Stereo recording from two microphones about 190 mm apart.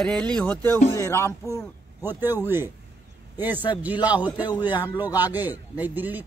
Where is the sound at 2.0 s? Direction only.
10° right (ahead or behind).